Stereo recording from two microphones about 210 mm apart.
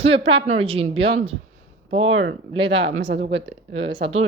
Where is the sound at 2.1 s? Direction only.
65° right (ahead or behind).